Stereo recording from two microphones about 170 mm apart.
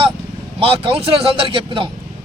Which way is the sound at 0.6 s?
30° right (ahead or behind).